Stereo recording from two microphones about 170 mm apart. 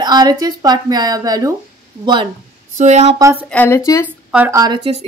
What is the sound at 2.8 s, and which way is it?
Speech, 40° right (ahead or behind).